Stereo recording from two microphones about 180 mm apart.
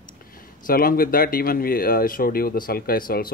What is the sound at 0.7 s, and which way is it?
Speech, 55° left (ahead or behind).